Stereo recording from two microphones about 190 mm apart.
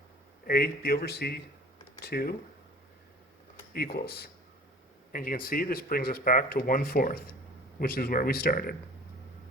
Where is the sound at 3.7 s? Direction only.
55° left (ahead or behind).